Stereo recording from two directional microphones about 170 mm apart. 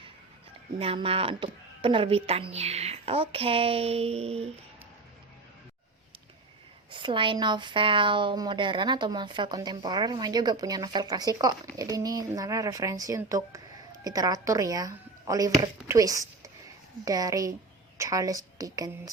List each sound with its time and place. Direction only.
0.8 s speech: 35° right (ahead or behind)
6.9 s a woman's voice: 30° right (ahead or behind)